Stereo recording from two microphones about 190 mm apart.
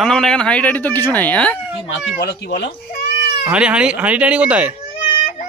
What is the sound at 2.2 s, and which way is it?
Speech, 65° left (ahead or behind).